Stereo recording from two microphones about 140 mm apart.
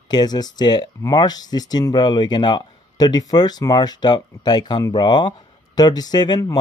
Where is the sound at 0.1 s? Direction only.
30° left (ahead or behind).